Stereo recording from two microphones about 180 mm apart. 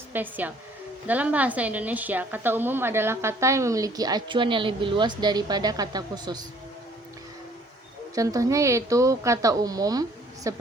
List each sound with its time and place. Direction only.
0.1 s a woman's voice: 10° right (ahead or behind)
8.1 s a woman's voice: 20° right (ahead or behind)